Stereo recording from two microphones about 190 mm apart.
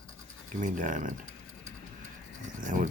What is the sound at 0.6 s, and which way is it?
Speech, 40° right (ahead or behind).